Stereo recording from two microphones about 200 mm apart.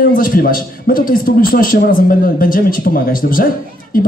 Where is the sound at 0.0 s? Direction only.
45° left (ahead or behind).